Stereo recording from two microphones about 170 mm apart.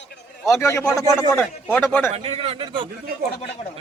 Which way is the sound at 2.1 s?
35° right (ahead or behind).